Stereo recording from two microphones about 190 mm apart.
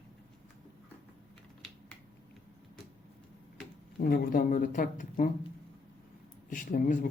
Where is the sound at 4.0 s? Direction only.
50° left (ahead or behind).